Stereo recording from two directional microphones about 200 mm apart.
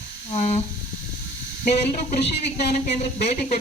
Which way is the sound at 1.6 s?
40° left (ahead or behind).